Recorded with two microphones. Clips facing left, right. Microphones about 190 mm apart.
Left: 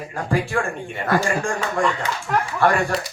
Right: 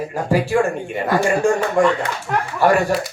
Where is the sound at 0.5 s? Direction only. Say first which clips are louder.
Right 7 dB; 20° right (ahead or behind).